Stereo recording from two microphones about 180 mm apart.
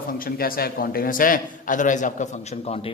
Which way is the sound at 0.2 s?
55° left (ahead or behind).